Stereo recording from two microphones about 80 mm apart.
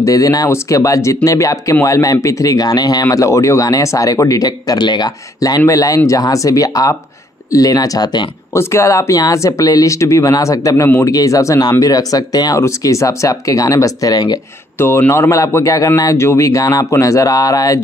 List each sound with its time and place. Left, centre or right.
0.0 s speech: left
3.1 s speech: left
5.7 s speech: left
8.5 s speech: left
12.5 s speech: left
14.8 s speech: left